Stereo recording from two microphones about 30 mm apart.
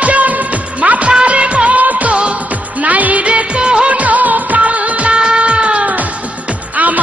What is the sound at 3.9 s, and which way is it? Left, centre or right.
Music of bollywood, right.